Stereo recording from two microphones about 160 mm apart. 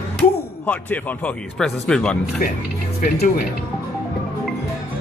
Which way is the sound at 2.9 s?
65° left (ahead or behind).